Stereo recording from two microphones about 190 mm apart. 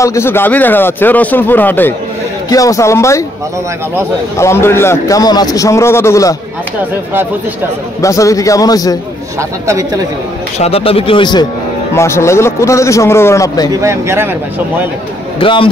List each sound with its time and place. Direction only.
0.0 s speech: 15° left (ahead or behind)
4.4 s speech: 15° left (ahead or behind)
8.0 s speech: 15° left (ahead or behind)
9.4 s speech: 15° right (ahead or behind)
10.6 s speech: 30° left (ahead or behind)
11.9 s speech: 15° left (ahead or behind)
13.7 s speech: 15° right (ahead or behind)
15.3 s speech: 25° left (ahead or behind)